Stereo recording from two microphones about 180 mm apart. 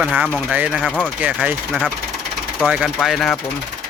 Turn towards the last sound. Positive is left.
turn(degrees=0)  # may be behind; listen again after turning